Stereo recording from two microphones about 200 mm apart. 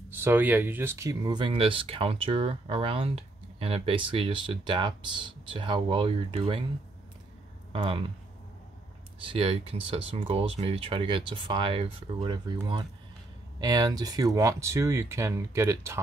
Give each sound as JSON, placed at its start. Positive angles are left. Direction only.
{"t": 0.1, "sound": "speech", "side_deg": -10}
{"t": 7.7, "sound": "speech", "side_deg": -25}
{"t": 9.2, "sound": "speech", "side_deg": -25}
{"t": 13.6, "sound": "speech", "side_deg": -20}